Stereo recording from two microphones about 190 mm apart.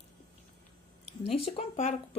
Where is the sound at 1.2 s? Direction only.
30° left (ahead or behind).